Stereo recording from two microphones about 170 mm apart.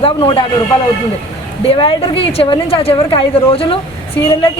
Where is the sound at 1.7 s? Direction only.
30° left (ahead or behind).